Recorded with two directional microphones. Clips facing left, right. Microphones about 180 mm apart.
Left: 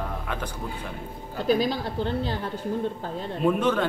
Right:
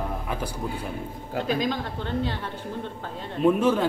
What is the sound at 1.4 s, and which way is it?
Speech, 35° left (ahead or behind).